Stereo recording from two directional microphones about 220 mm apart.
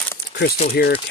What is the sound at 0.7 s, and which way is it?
Speech, 45° left (ahead or behind).